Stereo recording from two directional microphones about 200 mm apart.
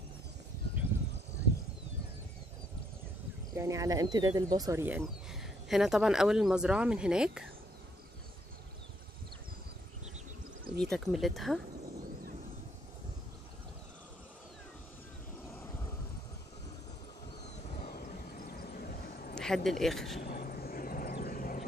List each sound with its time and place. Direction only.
3.5 s speech: 15° right (ahead or behind)
10.8 s speech: centre (ahead or behind)
17.8 s vehicle: 45° left (ahead or behind)
19.3 s speech: centre (ahead or behind)
20.2 s vehicle: 50° left (ahead or behind)